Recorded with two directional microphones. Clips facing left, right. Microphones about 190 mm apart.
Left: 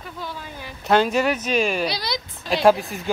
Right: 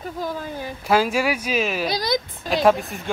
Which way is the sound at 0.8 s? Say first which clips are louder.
Left 1 dB; 5° right (ahead or behind).